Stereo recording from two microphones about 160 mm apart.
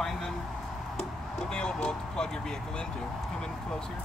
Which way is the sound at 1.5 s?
5° left (ahead or behind).